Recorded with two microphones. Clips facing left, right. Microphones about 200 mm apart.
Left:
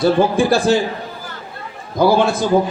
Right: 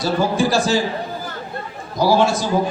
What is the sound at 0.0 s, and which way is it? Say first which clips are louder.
Speech: left 4 dB; 55° left (ahead or behind).